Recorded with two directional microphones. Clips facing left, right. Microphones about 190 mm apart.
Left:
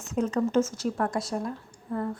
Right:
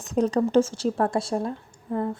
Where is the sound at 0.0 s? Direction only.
35° right (ahead or behind).